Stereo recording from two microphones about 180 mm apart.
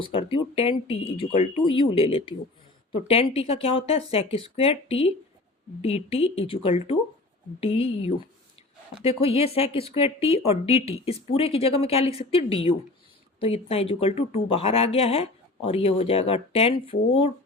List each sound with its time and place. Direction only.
0.0 s speech: 30° left (ahead or behind)